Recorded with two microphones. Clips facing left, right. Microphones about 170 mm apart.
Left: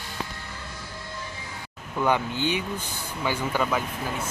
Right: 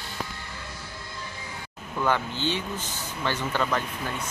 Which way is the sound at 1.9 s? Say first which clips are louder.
Left 2 dB; 15° left (ahead or behind).